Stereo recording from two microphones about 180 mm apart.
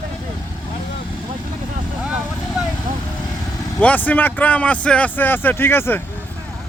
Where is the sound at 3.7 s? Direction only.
10° left (ahead or behind).